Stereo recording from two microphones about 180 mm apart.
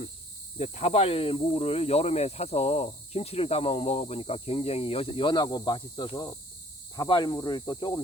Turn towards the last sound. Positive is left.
turn(degrees=25)  # may be behind; listen again after turning